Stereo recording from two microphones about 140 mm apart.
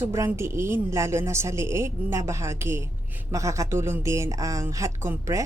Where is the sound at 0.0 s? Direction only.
20° right (ahead or behind).